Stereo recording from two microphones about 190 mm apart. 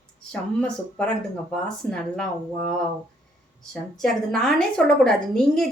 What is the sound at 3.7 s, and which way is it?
A woman's voice, centre (ahead or behind).